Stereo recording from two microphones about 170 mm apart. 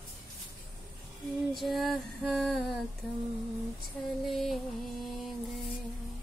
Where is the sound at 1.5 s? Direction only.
Centre (ahead or behind).